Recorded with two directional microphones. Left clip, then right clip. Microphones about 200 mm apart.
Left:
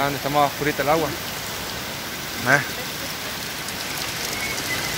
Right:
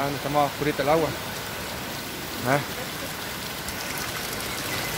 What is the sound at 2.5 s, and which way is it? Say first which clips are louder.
Speech: left 6 dB; 5° right (ahead or behind).